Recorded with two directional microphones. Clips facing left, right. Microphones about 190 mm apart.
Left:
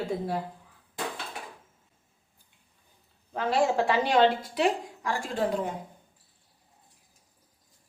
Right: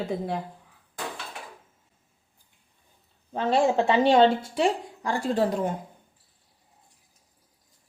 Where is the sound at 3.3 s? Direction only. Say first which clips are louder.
Right 3 dB; 25° right (ahead or behind).